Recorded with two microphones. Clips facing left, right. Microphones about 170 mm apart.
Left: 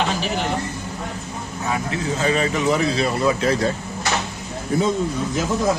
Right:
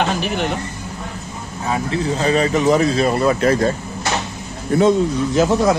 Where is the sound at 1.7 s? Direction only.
35° right (ahead or behind); by 3.7 s 50° right (ahead or behind).